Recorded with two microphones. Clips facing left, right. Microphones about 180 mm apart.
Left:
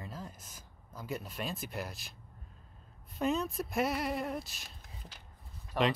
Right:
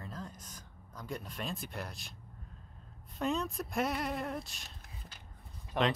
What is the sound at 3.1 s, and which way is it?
Speech, centre (ahead or behind).